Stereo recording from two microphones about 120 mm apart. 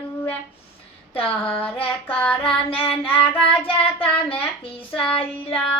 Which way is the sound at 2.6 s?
50° left (ahead or behind).